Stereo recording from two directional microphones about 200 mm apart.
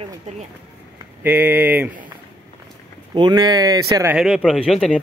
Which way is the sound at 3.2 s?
20° right (ahead or behind).